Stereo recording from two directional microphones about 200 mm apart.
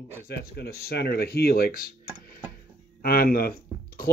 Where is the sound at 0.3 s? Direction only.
55° left (ahead or behind).